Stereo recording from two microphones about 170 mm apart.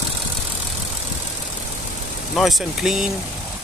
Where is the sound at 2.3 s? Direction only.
Centre (ahead or behind).